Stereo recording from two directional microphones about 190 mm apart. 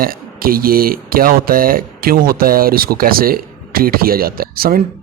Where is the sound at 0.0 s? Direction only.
50° right (ahead or behind).